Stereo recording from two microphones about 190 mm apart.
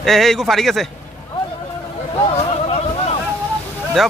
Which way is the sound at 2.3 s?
35° left (ahead or behind).